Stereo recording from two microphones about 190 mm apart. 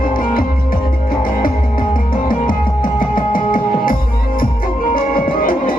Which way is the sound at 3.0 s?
45° left (ahead or behind).